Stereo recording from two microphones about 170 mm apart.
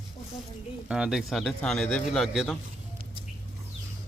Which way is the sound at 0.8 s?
5° right (ahead or behind).